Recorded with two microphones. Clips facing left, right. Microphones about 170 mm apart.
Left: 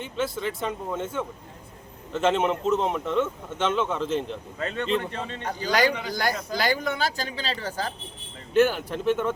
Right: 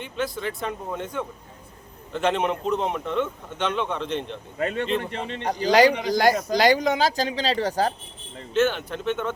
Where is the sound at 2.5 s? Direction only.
5° right (ahead or behind).